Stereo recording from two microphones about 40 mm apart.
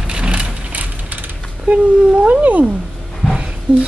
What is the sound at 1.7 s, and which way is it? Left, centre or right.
Cat, right.